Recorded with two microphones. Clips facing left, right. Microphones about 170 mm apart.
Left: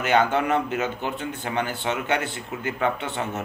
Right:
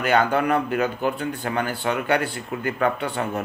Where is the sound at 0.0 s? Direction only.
20° left (ahead or behind).